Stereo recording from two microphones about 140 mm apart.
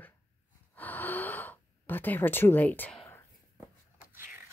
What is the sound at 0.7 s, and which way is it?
Gasp, 15° left (ahead or behind).